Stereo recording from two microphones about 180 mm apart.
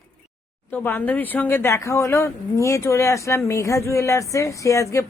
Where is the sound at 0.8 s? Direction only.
10° left (ahead or behind).